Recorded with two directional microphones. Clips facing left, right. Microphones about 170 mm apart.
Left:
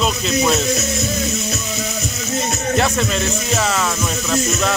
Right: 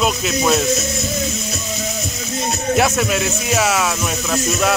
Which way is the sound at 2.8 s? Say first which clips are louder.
Right 2 dB; 10° right (ahead or behind).